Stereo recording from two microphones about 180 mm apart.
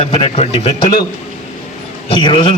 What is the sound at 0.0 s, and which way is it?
Speech, 30° left (ahead or behind).